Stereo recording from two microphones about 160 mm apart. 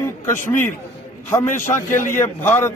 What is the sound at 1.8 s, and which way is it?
Speech, 15° left (ahead or behind).